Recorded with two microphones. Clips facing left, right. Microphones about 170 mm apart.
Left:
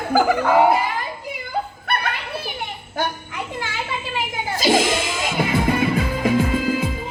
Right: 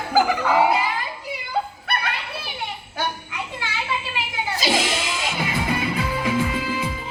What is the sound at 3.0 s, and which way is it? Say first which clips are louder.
Children playing: left 3 dB; 50° left (ahead or behind).